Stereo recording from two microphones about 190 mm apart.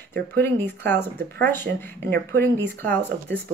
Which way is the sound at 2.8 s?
10° left (ahead or behind).